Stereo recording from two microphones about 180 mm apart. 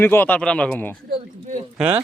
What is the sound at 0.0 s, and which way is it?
Speech, 10° left (ahead or behind).